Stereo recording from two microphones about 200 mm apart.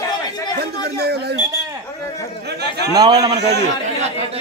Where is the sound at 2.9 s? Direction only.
20° right (ahead or behind).